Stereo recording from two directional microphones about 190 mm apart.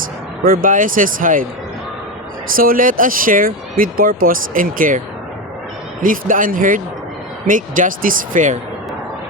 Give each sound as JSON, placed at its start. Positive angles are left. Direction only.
{"t": 0.4, "sound": "speech", "side_deg": -45}
{"t": 2.6, "sound": "speech", "side_deg": -50}